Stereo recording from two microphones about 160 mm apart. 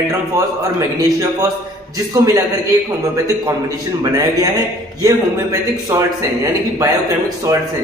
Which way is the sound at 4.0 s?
20° right (ahead or behind).